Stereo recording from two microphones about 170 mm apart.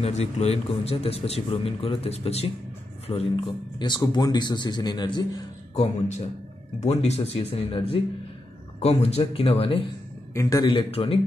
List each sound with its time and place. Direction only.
0.0 s a man's voice: 40° left (ahead or behind)
5.8 s a man's voice: 40° left (ahead or behind)
10.3 s a man's voice: 20° left (ahead or behind)